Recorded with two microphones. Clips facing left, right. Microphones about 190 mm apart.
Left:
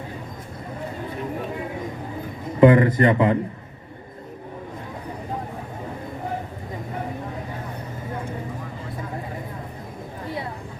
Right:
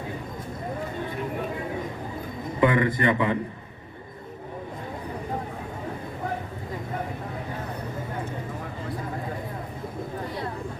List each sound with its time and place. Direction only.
2.6 s a man's voice: 40° left (ahead or behind)